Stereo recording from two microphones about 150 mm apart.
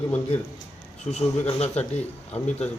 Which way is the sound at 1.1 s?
45° left (ahead or behind).